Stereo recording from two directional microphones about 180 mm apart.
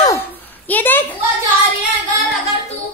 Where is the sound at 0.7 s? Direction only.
10° left (ahead or behind).